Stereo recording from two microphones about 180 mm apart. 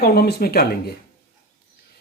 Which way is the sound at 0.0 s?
60° left (ahead or behind).